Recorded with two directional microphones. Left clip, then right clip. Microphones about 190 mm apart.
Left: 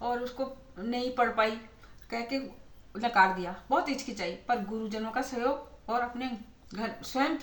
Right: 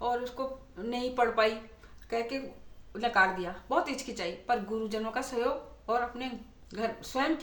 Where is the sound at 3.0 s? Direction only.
25° right (ahead or behind).